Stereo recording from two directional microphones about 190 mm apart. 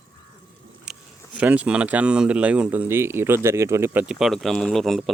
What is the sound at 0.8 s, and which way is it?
Speech, 5° right (ahead or behind).